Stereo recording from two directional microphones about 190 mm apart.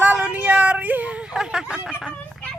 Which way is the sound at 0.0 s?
10° right (ahead or behind).